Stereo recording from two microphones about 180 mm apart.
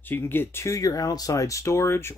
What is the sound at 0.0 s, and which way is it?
Speech, 10° left (ahead or behind).